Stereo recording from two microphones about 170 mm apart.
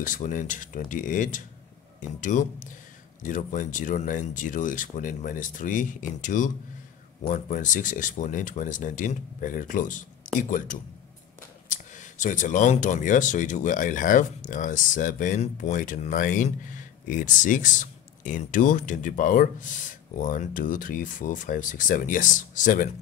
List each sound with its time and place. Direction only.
0.0 s speech: 50° left (ahead or behind)
11.7 s speech: 50° left (ahead or behind)